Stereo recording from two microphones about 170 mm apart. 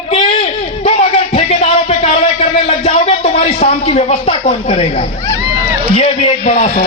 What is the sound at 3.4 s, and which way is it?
A woman's voice, 35° left (ahead or behind).